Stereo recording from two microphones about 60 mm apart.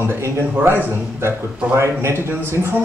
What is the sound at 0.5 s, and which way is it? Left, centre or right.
A man's voice, right.